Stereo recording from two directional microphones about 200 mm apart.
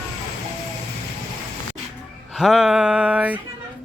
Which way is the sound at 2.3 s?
Centre (ahead or behind).